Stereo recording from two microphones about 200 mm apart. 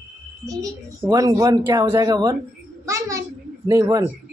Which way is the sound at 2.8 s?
15° right (ahead or behind).